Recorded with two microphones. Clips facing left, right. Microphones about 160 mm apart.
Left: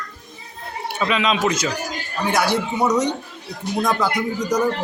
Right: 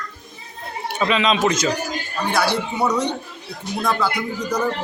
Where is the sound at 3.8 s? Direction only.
15° left (ahead or behind).